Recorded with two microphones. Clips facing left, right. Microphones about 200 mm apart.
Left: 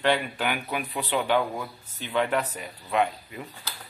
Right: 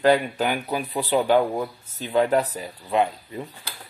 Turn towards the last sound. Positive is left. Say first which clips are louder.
# right 3 dB
turn(degrees=-30)  # may be behind; listen again after turning